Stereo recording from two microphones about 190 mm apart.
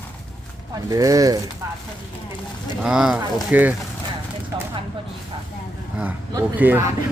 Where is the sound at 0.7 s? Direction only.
20° right (ahead or behind).